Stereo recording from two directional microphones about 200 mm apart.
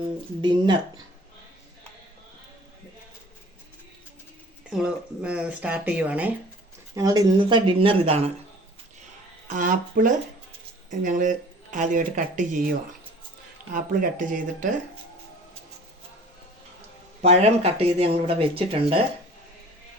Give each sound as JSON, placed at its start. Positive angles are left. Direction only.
{"t": 0.4, "sound": "speech", "side_deg": -25}
{"t": 4.7, "sound": "speech", "side_deg": -5}
{"t": 6.9, "sound": "speech", "side_deg": -20}
{"t": 9.5, "sound": "speech", "side_deg": -40}
{"t": 13.7, "sound": "speech", "side_deg": -40}
{"t": 17.2, "sound": "speech", "side_deg": -30}